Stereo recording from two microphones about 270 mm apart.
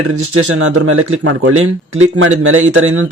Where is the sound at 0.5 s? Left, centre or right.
Right.